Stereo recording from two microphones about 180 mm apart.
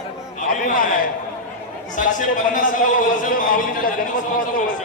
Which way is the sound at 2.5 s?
45° left (ahead or behind).